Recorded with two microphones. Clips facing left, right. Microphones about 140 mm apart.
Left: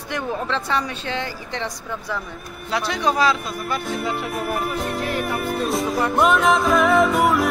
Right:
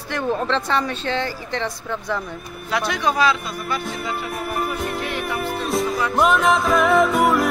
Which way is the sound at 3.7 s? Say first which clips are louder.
Left 2 dB; centre (ahead or behind).